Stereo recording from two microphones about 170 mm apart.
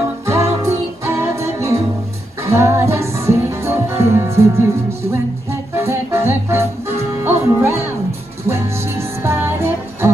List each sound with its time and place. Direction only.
0.3 s music: 20° right (ahead or behind)